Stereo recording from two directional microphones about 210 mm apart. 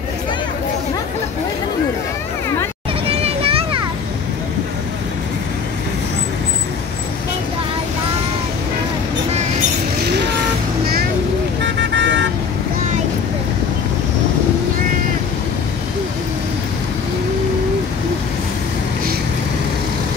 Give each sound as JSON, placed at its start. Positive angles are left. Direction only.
{"t": 3.1, "sound": "children playing", "side_deg": -30}
{"t": 11.6, "sound": "vehicle", "side_deg": -60}